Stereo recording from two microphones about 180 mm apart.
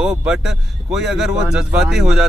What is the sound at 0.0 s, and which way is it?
Speech, 5° right (ahead or behind).